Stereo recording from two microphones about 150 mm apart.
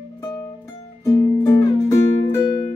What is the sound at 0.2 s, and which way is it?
Music, 25° left (ahead or behind).